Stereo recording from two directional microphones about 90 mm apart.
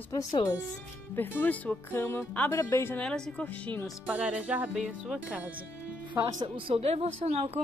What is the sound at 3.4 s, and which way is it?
Speech, 20° left (ahead or behind).